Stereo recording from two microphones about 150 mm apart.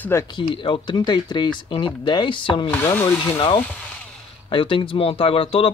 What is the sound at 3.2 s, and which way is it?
Speech, 35° left (ahead or behind).